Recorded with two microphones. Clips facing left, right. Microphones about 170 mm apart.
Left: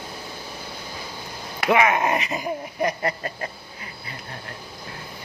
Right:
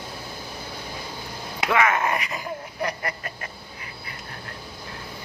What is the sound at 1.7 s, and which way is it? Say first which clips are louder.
Speech: left 3 dB; 20° left (ahead or behind).